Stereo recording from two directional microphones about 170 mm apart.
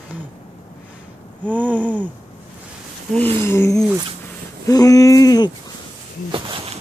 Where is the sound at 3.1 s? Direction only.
10° left (ahead or behind).